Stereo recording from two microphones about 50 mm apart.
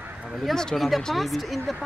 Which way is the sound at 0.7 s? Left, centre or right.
Centre.